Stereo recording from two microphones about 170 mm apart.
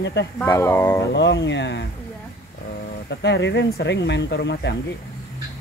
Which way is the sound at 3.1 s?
90° left.